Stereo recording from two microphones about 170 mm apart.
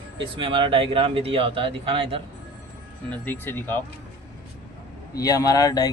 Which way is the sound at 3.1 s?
10° left (ahead or behind).